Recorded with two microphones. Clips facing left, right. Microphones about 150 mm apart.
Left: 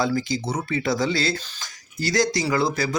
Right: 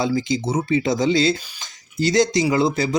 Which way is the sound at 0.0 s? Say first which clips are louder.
Right 3 dB; 20° right (ahead or behind).